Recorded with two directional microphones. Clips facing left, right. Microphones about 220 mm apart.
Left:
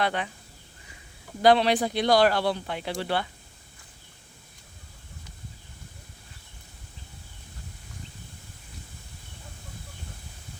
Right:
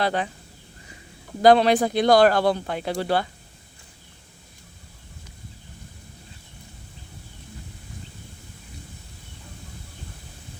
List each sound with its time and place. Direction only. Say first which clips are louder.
0.0 s speech: right 3 dB; 35° right (ahead or behind)
1.4 s speech: right 4 dB; 45° right (ahead or behind)